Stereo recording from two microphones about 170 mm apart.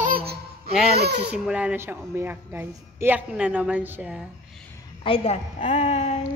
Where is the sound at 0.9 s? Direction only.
75° right (ahead or behind).